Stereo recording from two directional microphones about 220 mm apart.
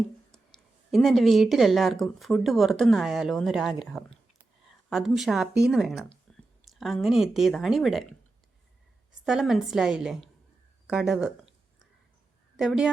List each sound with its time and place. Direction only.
0.3 s speech: centre (ahead or behind)
9.2 s speech: centre (ahead or behind)
12.5 s a woman's voice: 5° right (ahead or behind)